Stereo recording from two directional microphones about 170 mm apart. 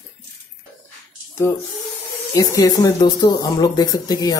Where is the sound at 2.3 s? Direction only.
20° left (ahead or behind).